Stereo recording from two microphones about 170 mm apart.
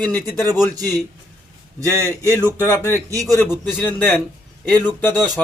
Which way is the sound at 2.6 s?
15° left (ahead or behind).